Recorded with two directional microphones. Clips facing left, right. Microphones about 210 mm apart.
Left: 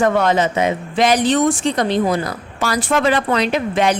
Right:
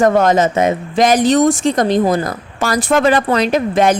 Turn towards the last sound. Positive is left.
turn(degrees=-45)  # may be behind; listen again after turning